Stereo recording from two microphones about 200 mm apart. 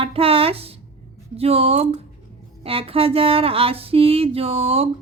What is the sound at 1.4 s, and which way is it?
Speech, 30° right (ahead or behind).